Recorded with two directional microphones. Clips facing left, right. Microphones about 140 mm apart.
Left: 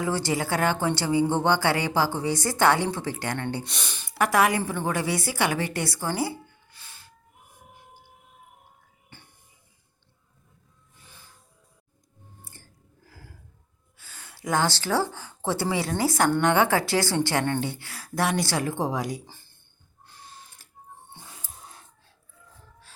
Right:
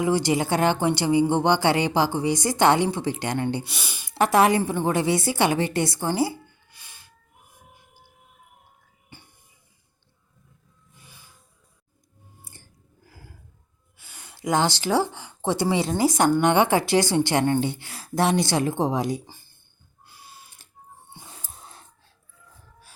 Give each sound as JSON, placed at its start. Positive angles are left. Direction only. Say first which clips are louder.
{"t": 0.0, "sound": "speech", "louder": "right 4 dB", "side_deg": -15}
{"t": 3.6, "sound": "speech", "louder": "even", "side_deg": -5}
{"t": 4.1, "sound": "speech", "louder": "right 3 dB", "side_deg": -25}
{"t": 6.7, "sound": "music", "louder": "left 1 dB", "side_deg": -15}
{"t": 9.1, "sound": "a sound", "louder": "right 3 dB", "side_deg": -15}
{"t": 11.0, "sound": "music", "louder": "even", "side_deg": -10}
{"t": 12.4, "sound": "chewing", "louder": "even", "side_deg": -15}
{"t": 14.0, "sound": "speech", "louder": "right 5 dB", "side_deg": -15}
{"t": 19.2, "sound": "a sound", "louder": "right 1 dB", "side_deg": -15}
{"t": 21.1, "sound": "dog", "louder": "right 1 dB", "side_deg": -10}